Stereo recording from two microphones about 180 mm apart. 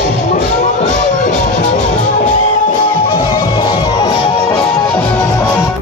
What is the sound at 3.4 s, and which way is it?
Music, 25° left (ahead or behind).